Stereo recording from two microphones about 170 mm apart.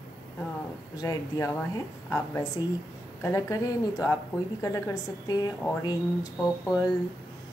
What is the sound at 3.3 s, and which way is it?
A woman's voice, 20° left (ahead or behind).